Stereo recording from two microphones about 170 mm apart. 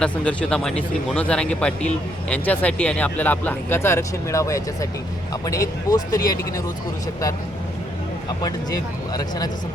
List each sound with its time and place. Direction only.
0.0 s speech: 5° left (ahead or behind); by 6.4 s 20° left (ahead or behind)
8.4 s speech: 25° left (ahead or behind)